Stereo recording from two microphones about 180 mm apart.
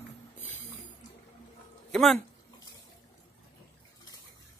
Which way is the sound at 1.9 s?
Centre (ahead or behind).